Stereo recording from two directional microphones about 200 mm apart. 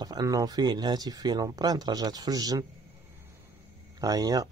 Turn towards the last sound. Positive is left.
turn(degrees=-20)  # may be behind; listen again after turning